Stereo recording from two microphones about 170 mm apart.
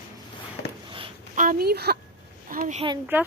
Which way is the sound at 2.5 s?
50° right (ahead or behind).